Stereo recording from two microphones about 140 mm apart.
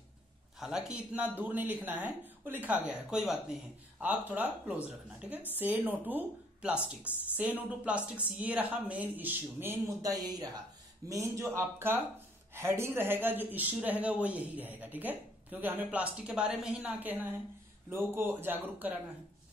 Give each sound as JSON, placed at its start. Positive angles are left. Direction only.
{"t": 0.6, "sound": "a man's voice", "side_deg": -5}
{"t": 10.1, "sound": "a man's voice", "side_deg": -25}